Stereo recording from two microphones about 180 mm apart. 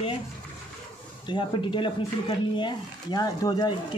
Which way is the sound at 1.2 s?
25° left (ahead or behind).